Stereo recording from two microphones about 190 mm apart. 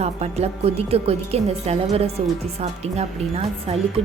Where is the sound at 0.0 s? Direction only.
35° right (ahead or behind).